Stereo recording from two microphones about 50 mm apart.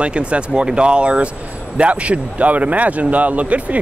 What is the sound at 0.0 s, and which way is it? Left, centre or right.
A man's voice, right.